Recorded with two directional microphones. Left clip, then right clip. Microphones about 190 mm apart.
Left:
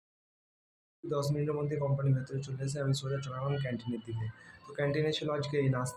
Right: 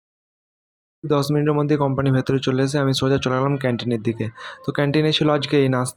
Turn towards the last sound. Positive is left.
turn(degrees=-45)  # may be behind; listen again after turning